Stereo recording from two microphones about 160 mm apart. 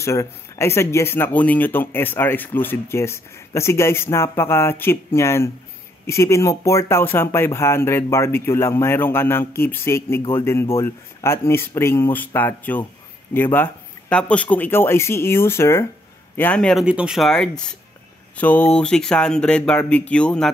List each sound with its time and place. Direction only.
0.0 s speech: 20° left (ahead or behind)